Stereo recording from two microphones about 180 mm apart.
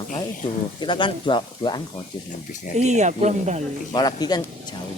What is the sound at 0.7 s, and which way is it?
Speech, 25° left (ahead or behind).